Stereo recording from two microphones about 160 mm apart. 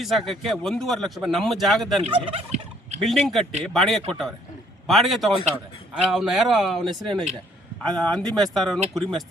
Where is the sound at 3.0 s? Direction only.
Centre (ahead or behind).